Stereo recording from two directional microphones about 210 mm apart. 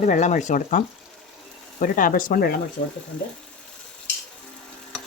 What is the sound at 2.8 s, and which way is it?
Speech, 55° left (ahead or behind).